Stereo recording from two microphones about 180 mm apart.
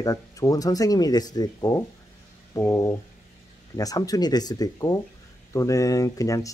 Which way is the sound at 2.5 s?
15° left (ahead or behind).